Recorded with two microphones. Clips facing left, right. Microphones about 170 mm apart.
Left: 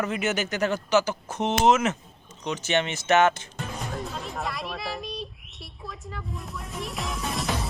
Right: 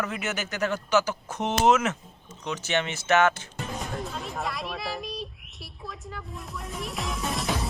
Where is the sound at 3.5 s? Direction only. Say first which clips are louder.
Even; centre (ahead or behind).